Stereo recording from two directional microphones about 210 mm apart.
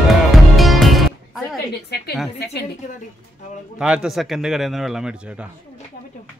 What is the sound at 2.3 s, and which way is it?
Speech, 50° left (ahead or behind).